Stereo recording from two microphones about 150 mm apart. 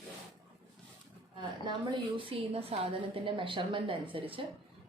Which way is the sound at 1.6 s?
30° right (ahead or behind).